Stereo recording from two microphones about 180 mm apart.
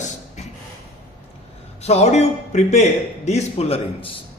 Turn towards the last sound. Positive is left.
turn(degrees=30)  # may be behind; listen again after turning